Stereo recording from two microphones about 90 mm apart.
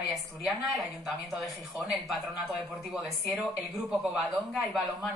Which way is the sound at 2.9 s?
Centre (ahead or behind).